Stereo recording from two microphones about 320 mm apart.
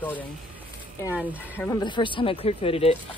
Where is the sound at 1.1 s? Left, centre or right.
Centre.